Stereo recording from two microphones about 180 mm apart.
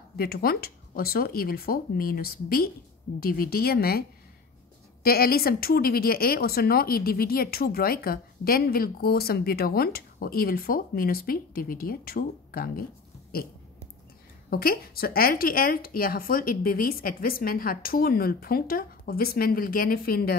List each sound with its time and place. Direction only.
0.2 s a woman's voice: 60° left (ahead or behind)
5.0 s a woman's voice: 60° left (ahead or behind)
14.5 s a woman's voice: 55° left (ahead or behind)